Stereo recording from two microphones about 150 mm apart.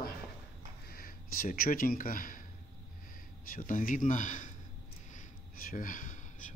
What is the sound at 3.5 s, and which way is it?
A man's voice, 60° left (ahead or behind).